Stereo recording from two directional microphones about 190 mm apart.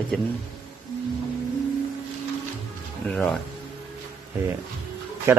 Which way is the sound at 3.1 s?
5° left (ahead or behind).